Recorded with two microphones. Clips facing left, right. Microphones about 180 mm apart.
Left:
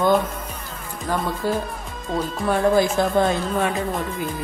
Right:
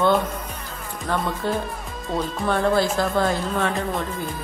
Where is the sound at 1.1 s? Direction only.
10° left (ahead or behind).